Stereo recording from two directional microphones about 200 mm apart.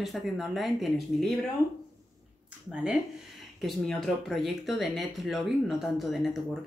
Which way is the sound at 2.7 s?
5° right (ahead or behind).